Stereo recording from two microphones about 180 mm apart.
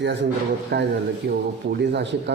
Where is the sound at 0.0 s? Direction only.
70° right (ahead or behind).